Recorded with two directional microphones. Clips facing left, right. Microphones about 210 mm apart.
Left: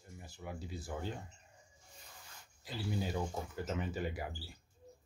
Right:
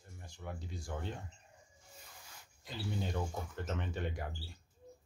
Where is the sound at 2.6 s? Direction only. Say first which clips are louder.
Left 1 dB; 5° left (ahead or behind).